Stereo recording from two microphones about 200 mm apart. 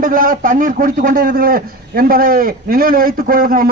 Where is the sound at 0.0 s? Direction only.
45° right (ahead or behind).